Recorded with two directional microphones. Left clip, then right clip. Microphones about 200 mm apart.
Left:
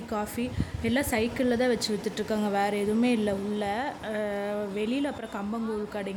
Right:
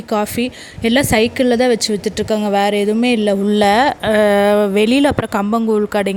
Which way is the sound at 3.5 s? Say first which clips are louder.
Right 18 dB; 50° right (ahead or behind).